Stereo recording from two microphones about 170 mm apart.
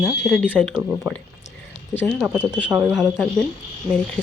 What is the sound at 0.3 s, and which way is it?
Speech, 5° left (ahead or behind).